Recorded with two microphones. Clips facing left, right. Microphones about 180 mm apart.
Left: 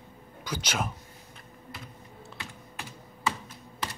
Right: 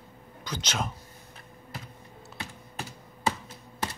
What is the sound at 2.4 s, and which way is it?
Computer keyboard, 35° right (ahead or behind).